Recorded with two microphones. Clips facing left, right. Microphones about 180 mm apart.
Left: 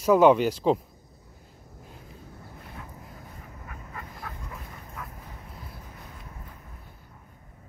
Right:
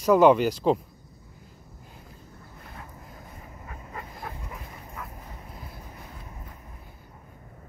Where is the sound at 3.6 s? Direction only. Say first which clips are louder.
Right 2 dB; 25° right (ahead or behind).